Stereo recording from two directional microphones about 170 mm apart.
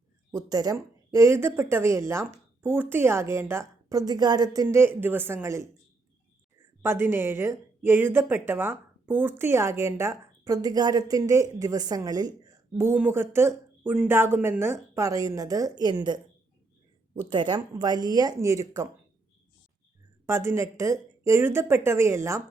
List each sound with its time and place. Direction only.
0.3 s speech: 20° right (ahead or behind)
6.8 s speech: 15° right (ahead or behind)
17.2 s speech: 30° right (ahead or behind)
20.2 s speech: 15° right (ahead or behind)